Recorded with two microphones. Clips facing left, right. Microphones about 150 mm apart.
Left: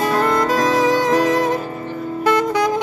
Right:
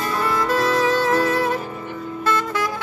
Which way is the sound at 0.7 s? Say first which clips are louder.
Left 3 dB; 15° left (ahead or behind).